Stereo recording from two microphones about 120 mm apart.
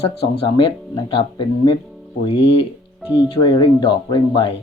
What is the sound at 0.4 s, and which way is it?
Speech, 45° left (ahead or behind).